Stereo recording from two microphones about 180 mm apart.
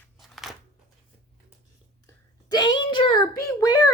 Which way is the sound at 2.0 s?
25° left (ahead or behind).